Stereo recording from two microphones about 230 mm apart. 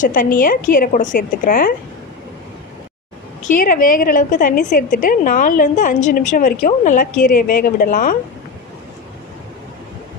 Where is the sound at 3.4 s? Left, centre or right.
Left.